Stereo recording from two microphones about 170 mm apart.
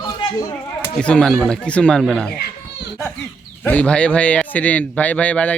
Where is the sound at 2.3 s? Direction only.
70° left (ahead or behind).